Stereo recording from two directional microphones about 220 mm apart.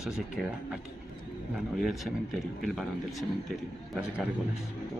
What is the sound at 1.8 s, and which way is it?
Speech, centre (ahead or behind).